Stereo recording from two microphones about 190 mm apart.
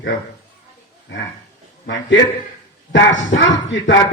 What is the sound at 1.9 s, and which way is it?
Speech, 70° left (ahead or behind).